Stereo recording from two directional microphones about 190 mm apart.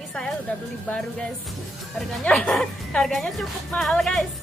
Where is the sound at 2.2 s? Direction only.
5° left (ahead or behind).